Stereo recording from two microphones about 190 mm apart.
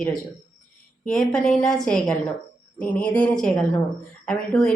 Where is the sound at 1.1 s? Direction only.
5° left (ahead or behind).